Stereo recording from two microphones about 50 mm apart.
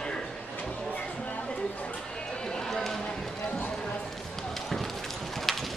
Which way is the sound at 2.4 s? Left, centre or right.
Centre.